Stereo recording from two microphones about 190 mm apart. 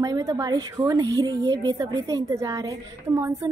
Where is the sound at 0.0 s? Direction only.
20° right (ahead or behind).